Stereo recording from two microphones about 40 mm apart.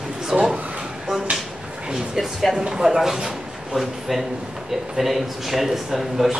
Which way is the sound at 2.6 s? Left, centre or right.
Centre.